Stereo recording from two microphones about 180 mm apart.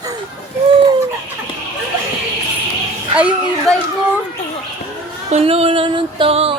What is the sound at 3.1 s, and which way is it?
Speech, 5° right (ahead or behind).